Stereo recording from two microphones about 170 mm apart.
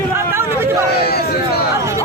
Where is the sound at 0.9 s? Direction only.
65° left (ahead or behind).